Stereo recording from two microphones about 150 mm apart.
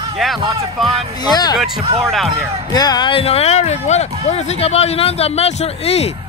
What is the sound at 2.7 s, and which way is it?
Speech, 25° left (ahead or behind).